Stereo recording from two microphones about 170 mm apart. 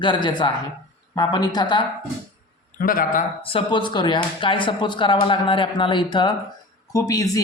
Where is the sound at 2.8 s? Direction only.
55° left (ahead or behind).